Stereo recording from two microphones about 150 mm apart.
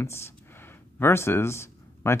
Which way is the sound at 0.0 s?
15° left (ahead or behind).